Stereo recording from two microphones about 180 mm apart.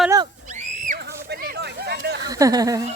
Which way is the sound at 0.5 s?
40° right (ahead or behind).